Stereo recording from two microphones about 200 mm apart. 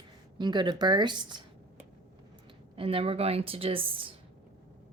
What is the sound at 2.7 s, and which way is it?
A woman's voice, 25° right (ahead or behind).